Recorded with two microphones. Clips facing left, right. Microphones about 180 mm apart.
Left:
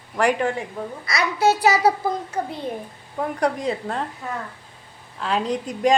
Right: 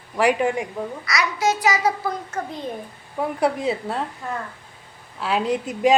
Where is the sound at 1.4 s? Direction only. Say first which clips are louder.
Left 4 dB; 35° left (ahead or behind).